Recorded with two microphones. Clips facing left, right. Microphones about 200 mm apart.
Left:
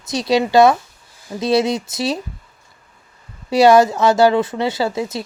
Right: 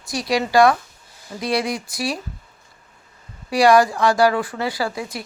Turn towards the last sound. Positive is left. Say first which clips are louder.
# left 5 dB
turn(degrees=25)  # may be behind; listen again after turning